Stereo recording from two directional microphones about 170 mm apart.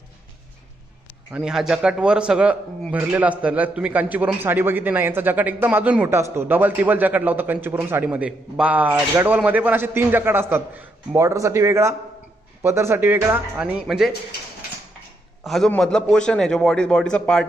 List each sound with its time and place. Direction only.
1.3 s a man's voice: 5° right (ahead or behind)
15.4 s a man's voice: centre (ahead or behind)